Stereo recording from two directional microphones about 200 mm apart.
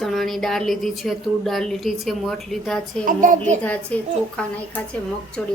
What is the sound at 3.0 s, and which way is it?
Speech, 40° right (ahead or behind).